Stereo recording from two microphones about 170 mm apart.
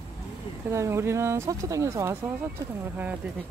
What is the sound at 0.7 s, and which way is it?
Speech, 15° right (ahead or behind).